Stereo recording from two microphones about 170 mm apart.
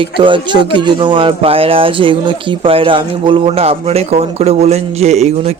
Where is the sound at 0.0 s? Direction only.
30° right (ahead or behind).